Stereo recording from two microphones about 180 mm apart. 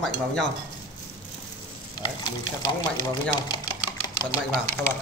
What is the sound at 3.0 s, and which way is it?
Speech, 20° left (ahead or behind).